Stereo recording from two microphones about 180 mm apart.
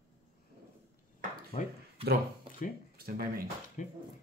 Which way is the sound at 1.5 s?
30° left (ahead or behind).